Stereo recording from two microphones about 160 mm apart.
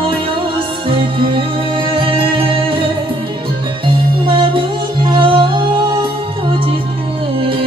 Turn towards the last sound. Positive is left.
turn(degrees=-30)  # may be behind; listen again after turning